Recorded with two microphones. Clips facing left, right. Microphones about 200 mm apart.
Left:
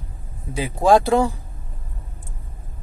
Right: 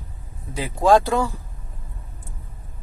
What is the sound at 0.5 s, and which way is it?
Speech, 15° left (ahead or behind).